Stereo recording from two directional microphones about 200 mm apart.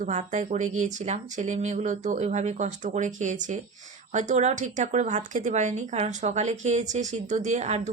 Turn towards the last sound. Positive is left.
turn(degrees=-35)  # may be behind; listen again after turning